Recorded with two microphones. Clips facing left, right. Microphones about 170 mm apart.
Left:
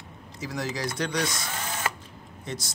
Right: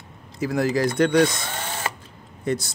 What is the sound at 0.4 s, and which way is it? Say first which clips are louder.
Speech: right 10 dB; 55° right (ahead or behind).